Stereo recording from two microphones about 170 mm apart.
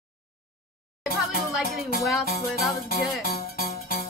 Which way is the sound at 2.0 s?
Centre (ahead or behind).